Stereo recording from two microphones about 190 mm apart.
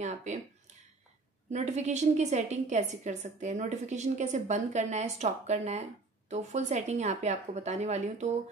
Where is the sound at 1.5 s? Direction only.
35° right (ahead or behind).